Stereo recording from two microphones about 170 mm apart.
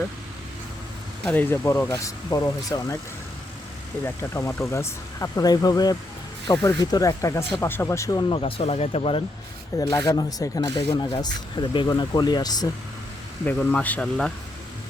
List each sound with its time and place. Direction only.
1.2 s speech: 10° left (ahead or behind)
4.0 s speech: 15° left (ahead or behind); by 9.2 s 35° left (ahead or behind)
9.7 s speech: 25° left (ahead or behind)
13.4 s speech: 10° left (ahead or behind)